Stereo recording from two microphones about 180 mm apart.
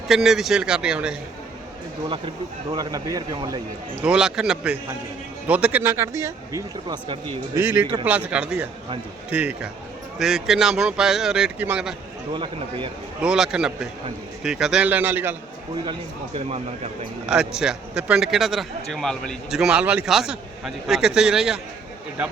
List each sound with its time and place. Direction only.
0.1 s a man's voice: centre (ahead or behind)
2.7 s speech: 20° right (ahead or behind)
4.0 s a man's voice: 5° right (ahead or behind); by 7.2 s 25° right (ahead or behind)
7.5 s a man's voice: 15° right (ahead or behind)
12.3 s speech: 30° right (ahead or behind)
13.2 s a man's voice: 5° right (ahead or behind)
15.9 s speech: 35° right (ahead or behind)
17.2 s a man's voice: 5° right (ahead or behind)